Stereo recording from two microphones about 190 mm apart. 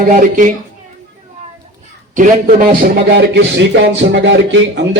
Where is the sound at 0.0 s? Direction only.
45° right (ahead or behind).